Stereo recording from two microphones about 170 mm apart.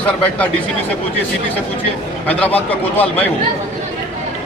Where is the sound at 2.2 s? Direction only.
10° left (ahead or behind).